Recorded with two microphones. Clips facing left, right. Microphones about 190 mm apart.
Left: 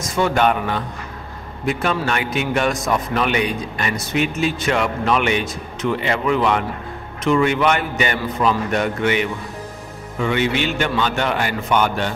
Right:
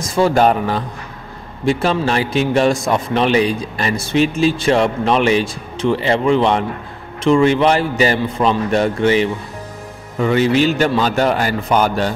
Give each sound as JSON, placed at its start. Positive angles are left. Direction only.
{"t": 0.0, "sound": "a man's voice", "side_deg": -35}